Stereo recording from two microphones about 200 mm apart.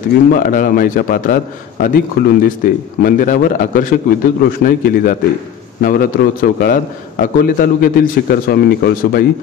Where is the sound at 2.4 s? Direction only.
45° left (ahead or behind).